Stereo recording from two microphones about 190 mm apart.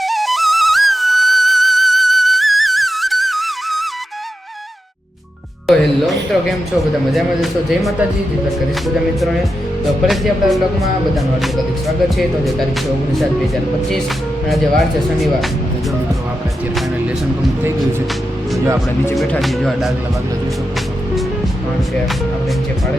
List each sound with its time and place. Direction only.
0.0 s flute: centre (ahead or behind)
5.6 s speech: centre (ahead or behind)
7.7 s speech: centre (ahead or behind)
10.1 s speech: centre (ahead or behind)
14.4 s speech: centre (ahead or behind)
19.1 s speech: centre (ahead or behind)